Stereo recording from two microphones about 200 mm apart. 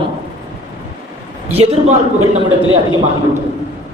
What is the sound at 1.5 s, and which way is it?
Speech, 30° right (ahead or behind).